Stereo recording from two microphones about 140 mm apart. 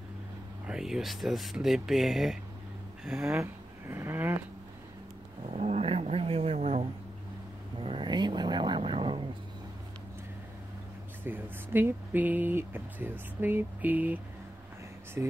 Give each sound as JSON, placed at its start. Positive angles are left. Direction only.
{"t": 0.7, "sound": "speech", "side_deg": -5}
{"t": 3.3, "sound": "speech", "side_deg": -15}
{"t": 5.5, "sound": "a sound", "side_deg": -50}
{"t": 7.8, "sound": "vehicle", "side_deg": -35}
{"t": 11.2, "sound": "speech", "side_deg": -15}